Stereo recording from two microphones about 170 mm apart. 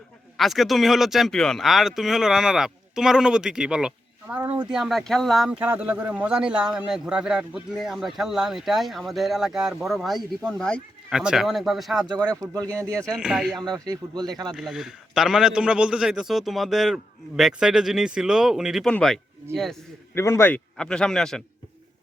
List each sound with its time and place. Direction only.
0.3 s speech: centre (ahead or behind)
12.0 s speech: 25° right (ahead or behind)
12.8 s speech: 5° left (ahead or behind)
14.5 s speech: 5° right (ahead or behind)
20.1 s speech: 15° left (ahead or behind)